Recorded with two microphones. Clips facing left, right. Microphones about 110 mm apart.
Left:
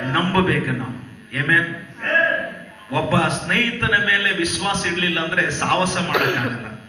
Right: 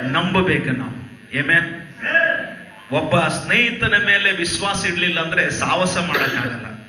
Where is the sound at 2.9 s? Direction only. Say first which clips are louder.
Right 2 dB; 30° left (ahead or behind).